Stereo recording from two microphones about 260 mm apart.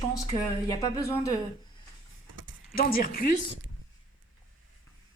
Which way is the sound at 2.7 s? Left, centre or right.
Left.